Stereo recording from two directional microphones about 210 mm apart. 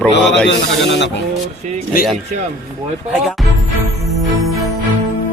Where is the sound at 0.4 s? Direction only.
55° left (ahead or behind).